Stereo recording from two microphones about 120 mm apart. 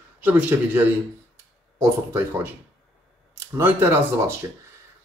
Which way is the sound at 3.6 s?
20° right (ahead or behind).